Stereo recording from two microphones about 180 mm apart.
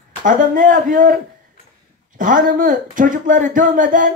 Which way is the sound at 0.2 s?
45° right (ahead or behind).